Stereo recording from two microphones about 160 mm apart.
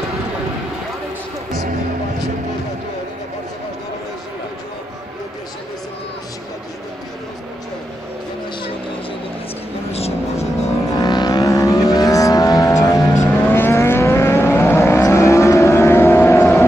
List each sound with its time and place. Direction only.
10.9 s vehicle: 25° left (ahead or behind)